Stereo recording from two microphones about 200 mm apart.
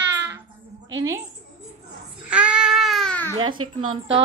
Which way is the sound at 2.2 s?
5° right (ahead or behind).